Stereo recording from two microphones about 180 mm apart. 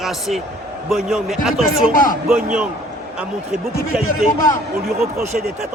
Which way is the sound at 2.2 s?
5° right (ahead or behind).